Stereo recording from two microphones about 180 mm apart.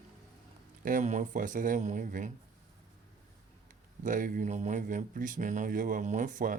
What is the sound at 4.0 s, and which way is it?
Speech, 45° right (ahead or behind).